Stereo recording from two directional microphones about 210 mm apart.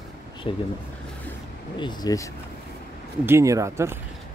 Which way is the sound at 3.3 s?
15° right (ahead or behind).